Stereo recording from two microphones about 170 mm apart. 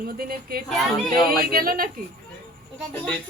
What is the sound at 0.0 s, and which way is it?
Speech, 60° right (ahead or behind).